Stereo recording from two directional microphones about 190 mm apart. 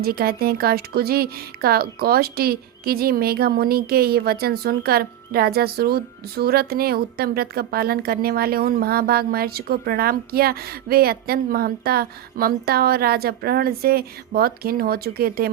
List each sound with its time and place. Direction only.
0.0 s speech: 55° right (ahead or behind)